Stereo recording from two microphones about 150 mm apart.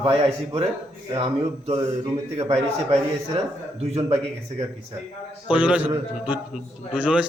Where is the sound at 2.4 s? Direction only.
45° right (ahead or behind).